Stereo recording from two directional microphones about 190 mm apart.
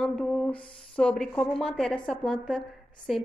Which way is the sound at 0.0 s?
5° left (ahead or behind).